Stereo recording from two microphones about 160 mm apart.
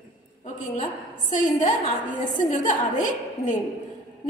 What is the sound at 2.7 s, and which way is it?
Speech, 50° left (ahead or behind).